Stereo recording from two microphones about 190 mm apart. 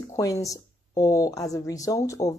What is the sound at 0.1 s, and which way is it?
Speech, 15° left (ahead or behind).